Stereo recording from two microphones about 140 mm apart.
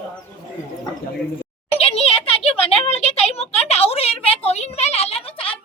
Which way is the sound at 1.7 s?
45° left (ahead or behind).